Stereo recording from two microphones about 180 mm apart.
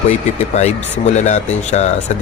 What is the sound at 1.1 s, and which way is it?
Speech, 40° left (ahead or behind).